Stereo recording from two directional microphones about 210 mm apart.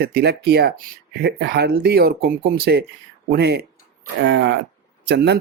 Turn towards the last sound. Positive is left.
turn(degrees=-55)  # may be behind; listen again after turning